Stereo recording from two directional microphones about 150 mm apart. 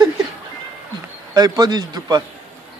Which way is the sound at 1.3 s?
25° right (ahead or behind).